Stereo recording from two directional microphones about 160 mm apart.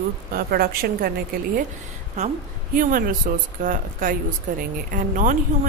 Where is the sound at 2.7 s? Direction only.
60° right (ahead or behind).